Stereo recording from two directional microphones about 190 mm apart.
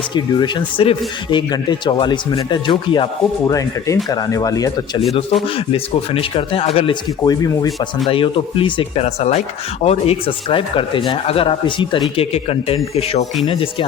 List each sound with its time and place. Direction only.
0.1 s speech: 25° left (ahead or behind)
5.5 s speech: 30° left (ahead or behind)
7.4 s a man's voice: 20° left (ahead or behind)